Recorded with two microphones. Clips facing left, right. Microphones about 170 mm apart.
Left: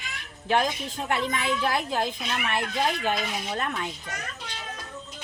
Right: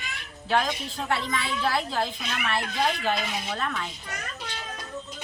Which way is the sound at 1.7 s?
15° left (ahead or behind).